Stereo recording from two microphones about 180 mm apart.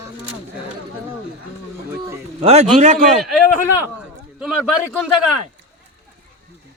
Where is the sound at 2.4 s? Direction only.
35° right (ahead or behind).